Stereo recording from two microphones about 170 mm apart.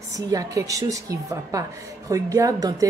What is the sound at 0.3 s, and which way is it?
A woman's voice, 20° right (ahead or behind).